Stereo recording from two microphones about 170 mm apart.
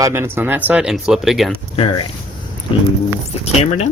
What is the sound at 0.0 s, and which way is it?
Speech, 15° right (ahead or behind).